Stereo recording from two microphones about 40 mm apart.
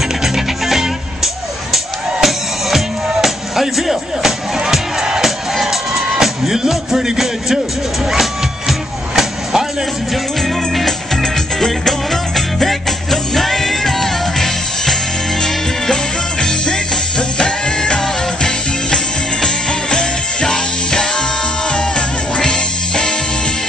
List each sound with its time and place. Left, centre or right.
0.2 s music: centre
10.4 s music: centre
15.4 s music: centre